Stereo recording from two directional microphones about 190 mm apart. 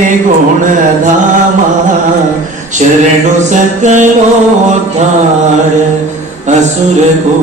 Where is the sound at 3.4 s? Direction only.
40° right (ahead or behind).